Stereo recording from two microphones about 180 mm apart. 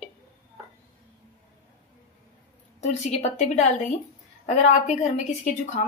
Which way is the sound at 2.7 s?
40° left (ahead or behind).